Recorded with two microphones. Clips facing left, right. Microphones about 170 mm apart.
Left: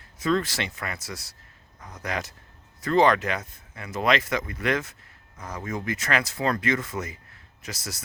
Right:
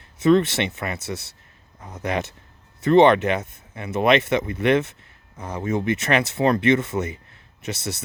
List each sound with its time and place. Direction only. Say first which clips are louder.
0.0 s speech: right 8 dB; 25° right (ahead or behind)